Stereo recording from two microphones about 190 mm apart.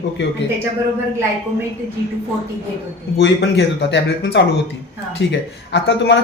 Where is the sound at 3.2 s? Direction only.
65° left (ahead or behind).